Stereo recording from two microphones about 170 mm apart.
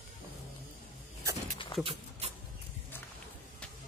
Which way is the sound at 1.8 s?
30° right (ahead or behind).